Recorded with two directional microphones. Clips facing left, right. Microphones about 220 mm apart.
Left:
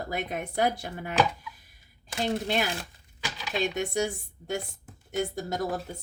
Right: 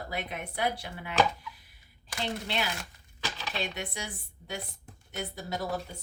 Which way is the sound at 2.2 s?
45° left (ahead or behind).